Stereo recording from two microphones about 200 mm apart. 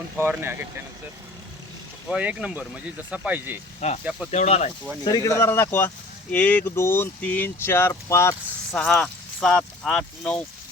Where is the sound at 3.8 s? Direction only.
30° left (ahead or behind).